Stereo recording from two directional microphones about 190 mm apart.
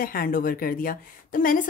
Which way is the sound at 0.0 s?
50° left (ahead or behind).